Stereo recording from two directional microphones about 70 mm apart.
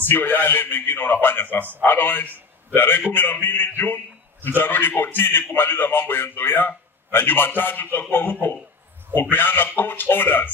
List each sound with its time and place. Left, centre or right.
0.1 s a man's voice: left